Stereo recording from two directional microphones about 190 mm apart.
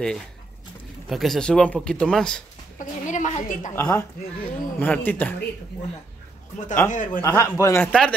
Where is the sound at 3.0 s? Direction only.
40° left (ahead or behind).